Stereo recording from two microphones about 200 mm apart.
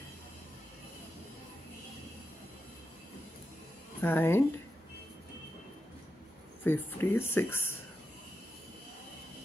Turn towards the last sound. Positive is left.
turn(degrees=10)  # may be behind; listen again after turning